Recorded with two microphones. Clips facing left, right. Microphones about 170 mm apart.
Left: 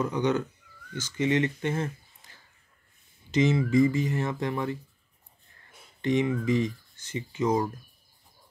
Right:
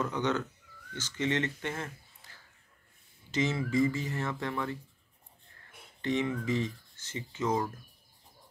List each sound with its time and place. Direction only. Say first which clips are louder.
0.0 s speech: left 5 dB; 15° left (ahead or behind)
6.0 s speech: left 5 dB; 15° left (ahead or behind)